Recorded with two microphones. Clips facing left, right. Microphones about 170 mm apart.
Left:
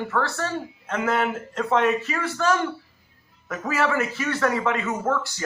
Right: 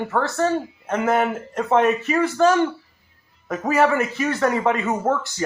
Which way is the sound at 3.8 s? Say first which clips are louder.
Right 5 dB; 20° right (ahead or behind).